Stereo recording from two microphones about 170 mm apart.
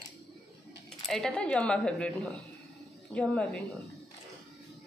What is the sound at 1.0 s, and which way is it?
Speech, centre (ahead or behind).